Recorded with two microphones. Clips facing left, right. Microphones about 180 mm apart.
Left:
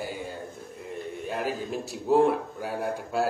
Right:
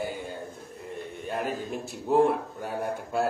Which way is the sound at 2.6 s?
Centre (ahead or behind).